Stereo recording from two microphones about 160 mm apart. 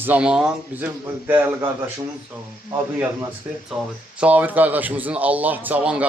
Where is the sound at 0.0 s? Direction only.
10° right (ahead or behind).